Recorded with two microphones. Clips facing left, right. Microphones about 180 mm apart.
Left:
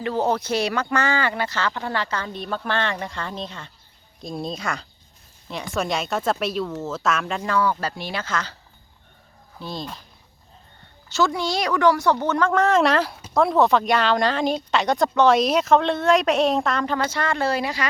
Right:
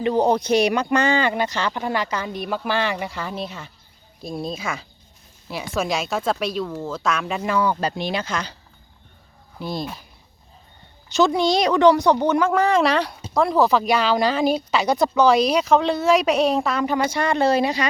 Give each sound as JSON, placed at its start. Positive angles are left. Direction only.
{"t": 0.0, "sound": "speech", "side_deg": -15}
{"t": 9.6, "sound": "speech", "side_deg": -10}
{"t": 11.1, "sound": "speech", "side_deg": -20}